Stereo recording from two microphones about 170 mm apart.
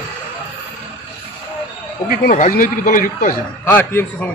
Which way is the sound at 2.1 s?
50° left (ahead or behind).